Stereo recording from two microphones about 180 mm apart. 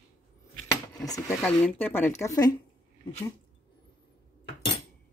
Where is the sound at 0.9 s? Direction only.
20° left (ahead or behind).